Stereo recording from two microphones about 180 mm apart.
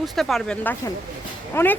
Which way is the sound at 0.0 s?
Centre (ahead or behind).